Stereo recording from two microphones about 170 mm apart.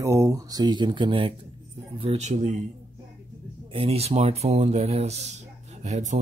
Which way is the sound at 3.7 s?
35° right (ahead or behind).